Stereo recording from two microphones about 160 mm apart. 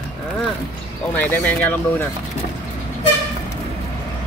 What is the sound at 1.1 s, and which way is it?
Speech, 10° left (ahead or behind).